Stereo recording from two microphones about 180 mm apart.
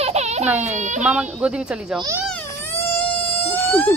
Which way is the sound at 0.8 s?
40° right (ahead or behind).